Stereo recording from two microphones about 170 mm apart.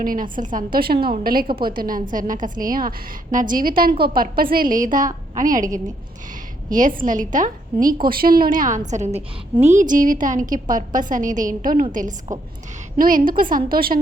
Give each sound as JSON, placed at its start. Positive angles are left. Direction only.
{"t": 0.0, "sound": "a woman's voice", "side_deg": -55}
{"t": 6.7, "sound": "a woman's voice", "side_deg": -50}